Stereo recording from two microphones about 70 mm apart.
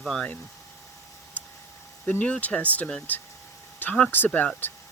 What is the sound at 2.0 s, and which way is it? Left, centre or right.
Speech, left.